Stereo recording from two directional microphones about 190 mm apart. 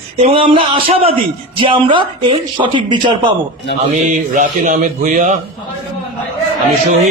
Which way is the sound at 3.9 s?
45° right (ahead or behind).